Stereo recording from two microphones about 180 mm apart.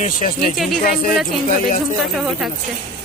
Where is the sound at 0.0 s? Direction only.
45° left (ahead or behind).